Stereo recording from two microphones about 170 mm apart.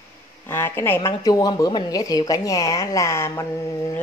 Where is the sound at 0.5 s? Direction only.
15° left (ahead or behind).